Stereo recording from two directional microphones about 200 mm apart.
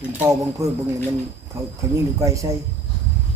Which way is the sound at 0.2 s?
15° right (ahead or behind).